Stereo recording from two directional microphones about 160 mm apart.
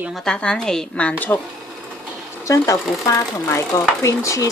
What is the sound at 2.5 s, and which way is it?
Speech, 20° left (ahead or behind).